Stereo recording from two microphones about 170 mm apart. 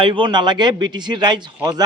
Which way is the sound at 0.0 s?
30° right (ahead or behind).